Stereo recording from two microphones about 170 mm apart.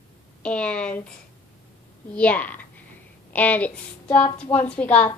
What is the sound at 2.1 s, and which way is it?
A woman's voice, 10° left (ahead or behind).